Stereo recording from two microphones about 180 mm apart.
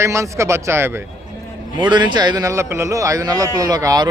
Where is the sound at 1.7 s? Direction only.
25° right (ahead or behind).